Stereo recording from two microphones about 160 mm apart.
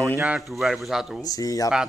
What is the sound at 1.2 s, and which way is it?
Speech, 25° left (ahead or behind).